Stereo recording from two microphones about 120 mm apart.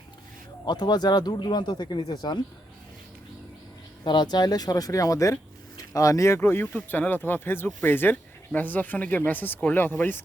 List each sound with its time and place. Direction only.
0.6 s speech: 35° left (ahead or behind)
4.0 s speech: 40° left (ahead or behind); by 10.2 s 15° left (ahead or behind)